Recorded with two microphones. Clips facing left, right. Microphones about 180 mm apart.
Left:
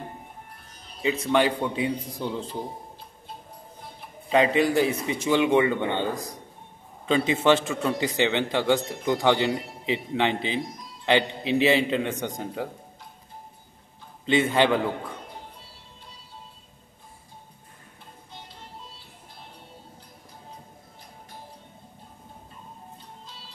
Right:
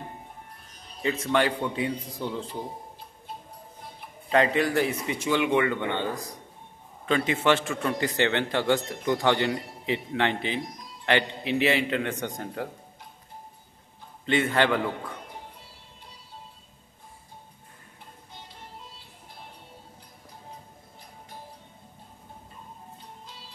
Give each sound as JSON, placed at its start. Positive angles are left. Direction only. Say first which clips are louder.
{"t": 1.0, "sound": "a man's voice", "louder": "left 2 dB", "side_deg": 15}
{"t": 4.3, "sound": "speech", "louder": "left 2 dB", "side_deg": 15}
{"t": 7.2, "sound": "a man's voice", "louder": "left 4 dB", "side_deg": 20}
{"t": 14.2, "sound": "speech", "louder": "left 2 dB", "side_deg": 20}